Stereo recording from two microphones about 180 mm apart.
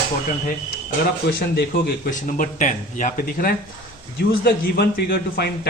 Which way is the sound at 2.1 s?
45° left (ahead or behind).